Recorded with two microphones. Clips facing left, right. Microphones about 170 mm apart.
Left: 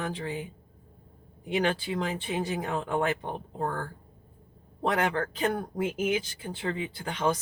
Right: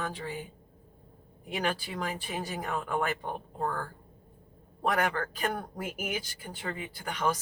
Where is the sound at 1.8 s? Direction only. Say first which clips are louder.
Left 4 dB; 25° left (ahead or behind).